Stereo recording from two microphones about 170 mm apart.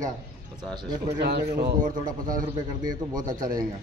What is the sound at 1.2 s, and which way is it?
A man's voice, 75° right (ahead or behind).